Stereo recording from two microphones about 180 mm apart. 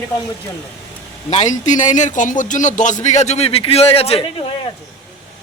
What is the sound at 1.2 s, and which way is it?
A man's voice, 40° left (ahead or behind).